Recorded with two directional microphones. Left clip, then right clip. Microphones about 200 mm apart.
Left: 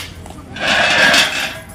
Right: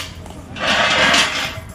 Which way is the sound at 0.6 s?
20° left (ahead or behind).